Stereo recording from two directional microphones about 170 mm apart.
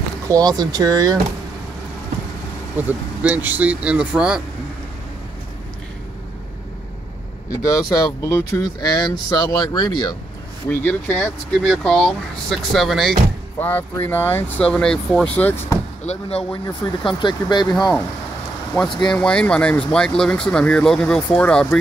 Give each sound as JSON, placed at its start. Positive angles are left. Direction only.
{"t": 0.3, "sound": "speech", "side_deg": -20}
{"t": 2.9, "sound": "speech", "side_deg": -10}
{"t": 8.2, "sound": "speech", "side_deg": 15}
{"t": 10.7, "sound": "speech", "side_deg": 10}
{"t": 13.6, "sound": "speech", "side_deg": 10}
{"t": 16.1, "sound": "speech", "side_deg": 35}
{"t": 16.6, "sound": "speech", "side_deg": 25}
{"t": 19.1, "sound": "speech", "side_deg": 5}